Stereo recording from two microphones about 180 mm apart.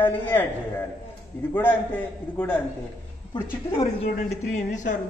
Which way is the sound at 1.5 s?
10° left (ahead or behind).